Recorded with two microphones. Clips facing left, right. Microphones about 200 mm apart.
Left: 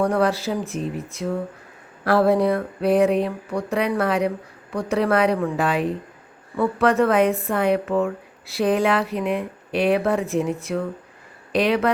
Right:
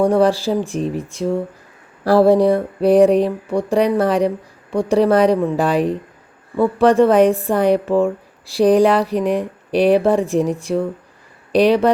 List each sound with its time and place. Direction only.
0.0 s a woman's voice: 30° right (ahead or behind)